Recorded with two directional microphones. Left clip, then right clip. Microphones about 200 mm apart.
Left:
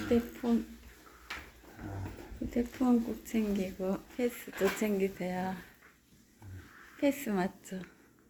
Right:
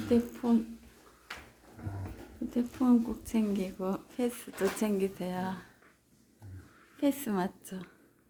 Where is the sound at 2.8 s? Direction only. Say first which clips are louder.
Right 3 dB; 20° right (ahead or behind).